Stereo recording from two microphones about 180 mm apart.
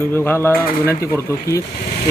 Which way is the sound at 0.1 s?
10° left (ahead or behind).